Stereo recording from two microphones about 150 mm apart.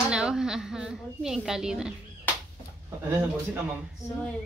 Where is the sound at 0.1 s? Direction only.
5° right (ahead or behind).